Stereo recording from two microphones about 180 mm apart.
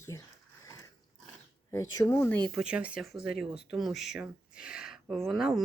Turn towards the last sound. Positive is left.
turn(degrees=0)  # may be behind; listen again after turning